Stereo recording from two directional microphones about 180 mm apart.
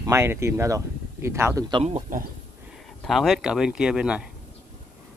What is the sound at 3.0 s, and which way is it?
Speech, centre (ahead or behind).